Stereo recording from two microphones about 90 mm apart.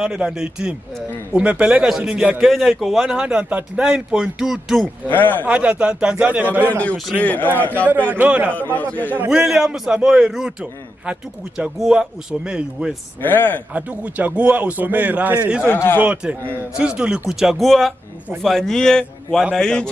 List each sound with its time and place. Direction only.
0.0 s a man's voice: 5° right (ahead or behind)
5.1 s speech: 20° left (ahead or behind)
5.5 s a man's voice: 15° right (ahead or behind)
6.6 s a man's voice: 15° left (ahead or behind)
7.9 s a man's voice: 20° right (ahead or behind)
8.5 s speech: 20° left (ahead or behind)
9.3 s a man's voice: 5° right (ahead or behind)
13.2 s speech: 20° left (ahead or behind)
13.7 s a man's voice: 20° right (ahead or behind)
15.6 s speech: 25° left (ahead or behind)
16.0 s a man's voice: 15° right (ahead or behind); by 19.9 s 10° left (ahead or behind)